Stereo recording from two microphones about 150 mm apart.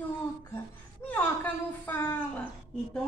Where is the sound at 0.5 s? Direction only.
10° left (ahead or behind).